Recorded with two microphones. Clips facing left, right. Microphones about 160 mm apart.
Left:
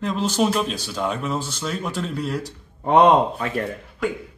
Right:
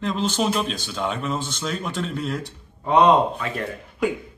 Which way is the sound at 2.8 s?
55° left (ahead or behind).